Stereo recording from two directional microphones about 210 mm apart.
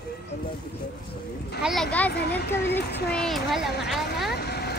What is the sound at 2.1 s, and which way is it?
Speech, 50° left (ahead or behind).